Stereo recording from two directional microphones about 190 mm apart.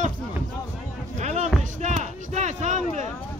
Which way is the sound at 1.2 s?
35° right (ahead or behind).